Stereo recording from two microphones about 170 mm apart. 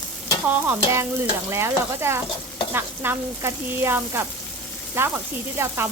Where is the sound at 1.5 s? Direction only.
15° right (ahead or behind).